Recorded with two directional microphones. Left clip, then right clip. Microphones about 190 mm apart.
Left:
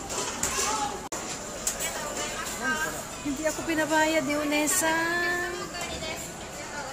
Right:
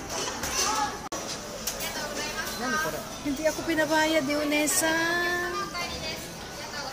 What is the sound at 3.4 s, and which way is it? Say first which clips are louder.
Music: right 2 dB; 5° right (ahead or behind).